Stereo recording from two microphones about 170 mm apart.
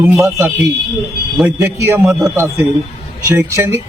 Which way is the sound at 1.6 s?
15° right (ahead or behind).